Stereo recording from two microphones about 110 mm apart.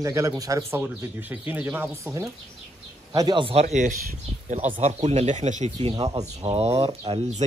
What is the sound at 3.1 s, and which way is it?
Speech, 40° right (ahead or behind).